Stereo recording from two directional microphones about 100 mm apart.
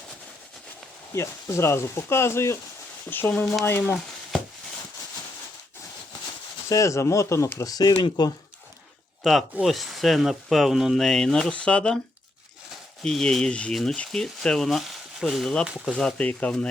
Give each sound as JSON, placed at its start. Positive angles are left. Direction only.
{"t": 1.1, "sound": "speech", "side_deg": 30}
{"t": 6.7, "sound": "speech", "side_deg": 30}
{"t": 9.2, "sound": "speech", "side_deg": 5}